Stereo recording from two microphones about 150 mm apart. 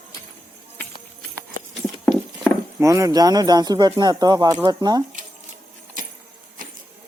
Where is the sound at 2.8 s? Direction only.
20° right (ahead or behind).